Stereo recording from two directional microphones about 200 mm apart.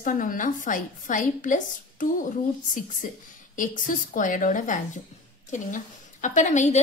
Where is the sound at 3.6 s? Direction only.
40° left (ahead or behind).